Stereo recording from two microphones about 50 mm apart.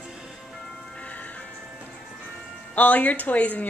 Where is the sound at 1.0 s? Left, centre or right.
Left.